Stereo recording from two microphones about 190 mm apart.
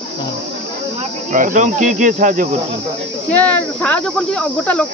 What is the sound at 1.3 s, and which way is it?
Speech, 45° right (ahead or behind).